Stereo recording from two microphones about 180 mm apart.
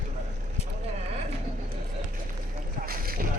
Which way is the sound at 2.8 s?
55° right (ahead or behind).